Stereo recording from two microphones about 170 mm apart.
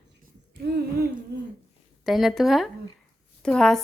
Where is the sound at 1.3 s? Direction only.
80° right.